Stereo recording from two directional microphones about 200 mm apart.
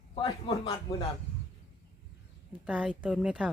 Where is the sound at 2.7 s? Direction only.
5° right (ahead or behind).